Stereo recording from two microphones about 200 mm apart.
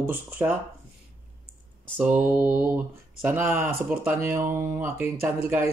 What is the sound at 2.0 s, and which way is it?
Speech, 10° right (ahead or behind).